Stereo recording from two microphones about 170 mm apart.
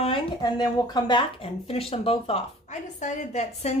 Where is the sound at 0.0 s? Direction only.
25° left (ahead or behind).